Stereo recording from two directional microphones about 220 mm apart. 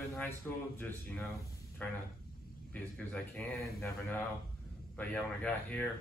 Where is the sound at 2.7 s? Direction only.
5° left (ahead or behind).